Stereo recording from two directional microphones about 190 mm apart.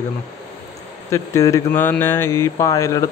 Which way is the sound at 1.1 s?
15° left (ahead or behind).